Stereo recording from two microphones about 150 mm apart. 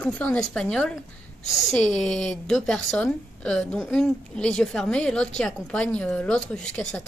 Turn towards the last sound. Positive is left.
turn(degrees=5)  # may be behind; listen again after turning